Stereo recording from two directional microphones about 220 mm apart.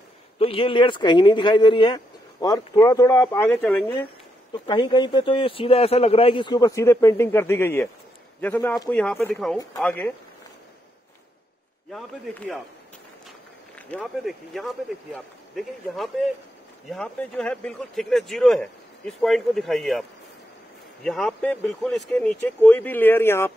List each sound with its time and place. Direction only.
0.4 s speech: 25° left (ahead or behind); by 4.1 s 5° left (ahead or behind)
4.6 s speech: 20° left (ahead or behind)
11.9 s speech: 5° left (ahead or behind)
13.7 s speech: 5° left (ahead or behind)